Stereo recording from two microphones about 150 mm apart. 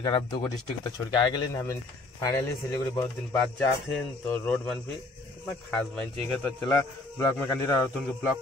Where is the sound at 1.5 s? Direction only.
20° left (ahead or behind).